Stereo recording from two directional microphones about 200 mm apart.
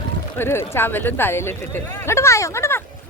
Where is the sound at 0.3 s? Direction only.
10° left (ahead or behind).